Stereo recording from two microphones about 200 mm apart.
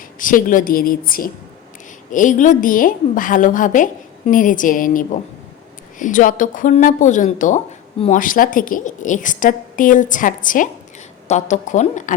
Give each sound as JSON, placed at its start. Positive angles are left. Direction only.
{"t": 0.2, "sound": "a woman's voice", "side_deg": 40}